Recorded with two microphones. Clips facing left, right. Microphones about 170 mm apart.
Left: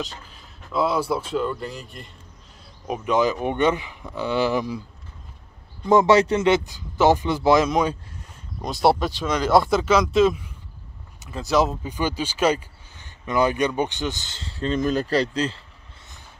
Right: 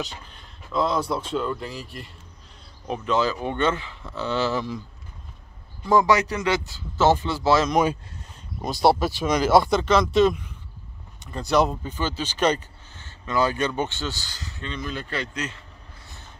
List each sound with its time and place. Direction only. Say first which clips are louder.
0.0 s speech: left 1 dB; 5° left (ahead or behind)
2.9 s speech: left 2 dB; 15° left (ahead or behind)
5.9 s speech: left 4 dB; 25° left (ahead or behind)
7.7 s speech: right 1 dB; 5° right (ahead or behind)
9.5 s speech: left 1 dB; centre (ahead or behind); by 15.6 s 30° left (ahead or behind)